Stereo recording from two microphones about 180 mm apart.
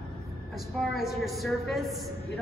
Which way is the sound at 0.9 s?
Centre (ahead or behind).